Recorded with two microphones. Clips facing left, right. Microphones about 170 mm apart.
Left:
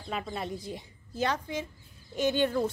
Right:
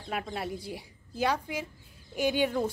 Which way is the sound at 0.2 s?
5° right (ahead or behind).